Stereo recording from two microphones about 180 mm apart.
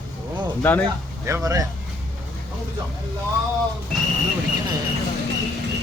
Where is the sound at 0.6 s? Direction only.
10° left (ahead or behind).